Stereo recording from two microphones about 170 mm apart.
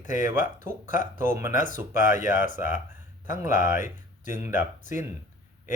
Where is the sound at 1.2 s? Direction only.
15° right (ahead or behind).